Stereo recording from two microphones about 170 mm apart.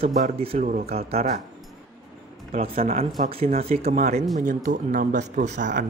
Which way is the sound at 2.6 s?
55° right (ahead or behind).